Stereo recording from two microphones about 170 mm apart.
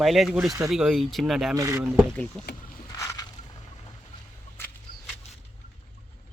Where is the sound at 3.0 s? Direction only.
15° left (ahead or behind).